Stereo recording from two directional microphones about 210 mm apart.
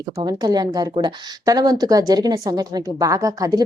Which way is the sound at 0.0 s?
20° right (ahead or behind).